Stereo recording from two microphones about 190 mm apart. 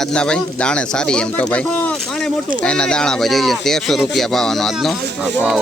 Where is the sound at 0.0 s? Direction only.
5° left (ahead or behind).